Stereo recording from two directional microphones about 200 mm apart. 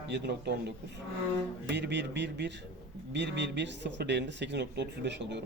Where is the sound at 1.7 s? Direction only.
60° right (ahead or behind).